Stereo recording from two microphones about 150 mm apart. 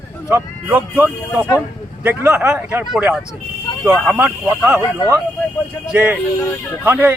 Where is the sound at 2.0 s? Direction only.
15° right (ahead or behind).